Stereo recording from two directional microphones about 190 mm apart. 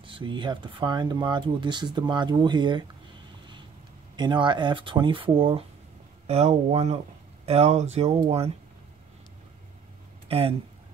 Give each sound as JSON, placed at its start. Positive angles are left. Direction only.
{"t": 0.0, "sound": "speech", "side_deg": -25}
{"t": 4.2, "sound": "speech", "side_deg": -25}
{"t": 10.2, "sound": "speech", "side_deg": -30}